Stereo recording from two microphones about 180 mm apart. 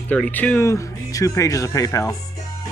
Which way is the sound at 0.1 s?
10° left (ahead or behind).